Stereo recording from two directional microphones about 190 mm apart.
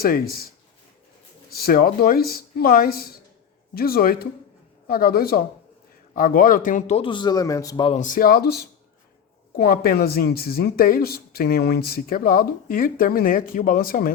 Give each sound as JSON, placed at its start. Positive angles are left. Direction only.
{"t": 0.0, "sound": "speech", "side_deg": 50}
{"t": 1.5, "sound": "a man's voice", "side_deg": 50}
{"t": 7.9, "sound": "speech", "side_deg": 45}